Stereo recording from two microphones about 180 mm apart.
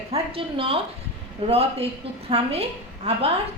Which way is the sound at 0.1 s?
30° right (ahead or behind).